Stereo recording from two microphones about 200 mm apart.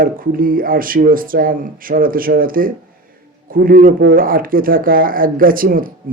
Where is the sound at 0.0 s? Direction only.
45° right (ahead or behind).